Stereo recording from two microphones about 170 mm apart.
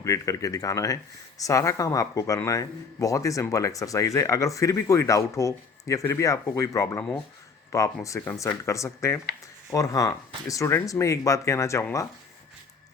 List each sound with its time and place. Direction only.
0.0 s speech: 20° left (ahead or behind)
8.0 s speech: 15° left (ahead or behind)